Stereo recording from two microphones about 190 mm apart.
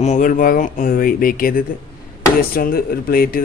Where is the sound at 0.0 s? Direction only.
40° left (ahead or behind).